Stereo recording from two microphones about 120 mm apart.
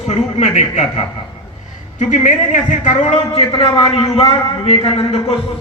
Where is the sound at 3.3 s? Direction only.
50° left (ahead or behind).